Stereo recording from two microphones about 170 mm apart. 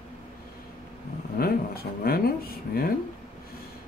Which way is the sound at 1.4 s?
65° left (ahead or behind).